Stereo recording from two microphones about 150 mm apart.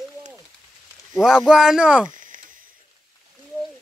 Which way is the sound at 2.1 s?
60° right (ahead or behind).